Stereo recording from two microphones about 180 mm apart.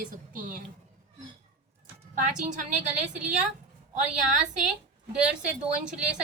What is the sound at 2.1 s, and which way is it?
Speech, 45° right (ahead or behind).